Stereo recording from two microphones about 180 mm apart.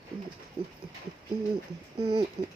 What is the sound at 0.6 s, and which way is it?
Speech, 30° right (ahead or behind).